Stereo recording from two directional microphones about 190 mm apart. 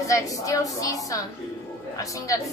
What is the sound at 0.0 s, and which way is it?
A woman's voice, 15° left (ahead or behind).